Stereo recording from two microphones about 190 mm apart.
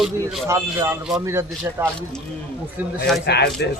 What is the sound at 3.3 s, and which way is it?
Speech, 60° left (ahead or behind).